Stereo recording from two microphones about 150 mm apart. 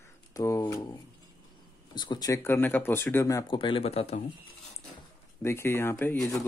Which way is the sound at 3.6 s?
40° left (ahead or behind).